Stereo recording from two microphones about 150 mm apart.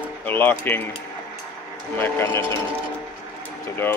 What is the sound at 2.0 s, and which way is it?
Speech, 15° left (ahead or behind).